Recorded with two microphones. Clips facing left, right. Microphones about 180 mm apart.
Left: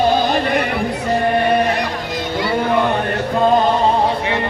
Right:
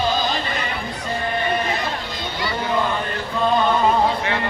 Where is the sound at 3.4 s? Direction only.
40° left (ahead or behind).